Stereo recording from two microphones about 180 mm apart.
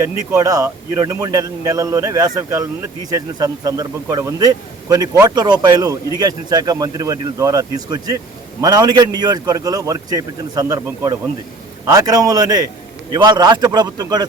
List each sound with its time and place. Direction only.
0.0 s speech: 15° right (ahead or behind)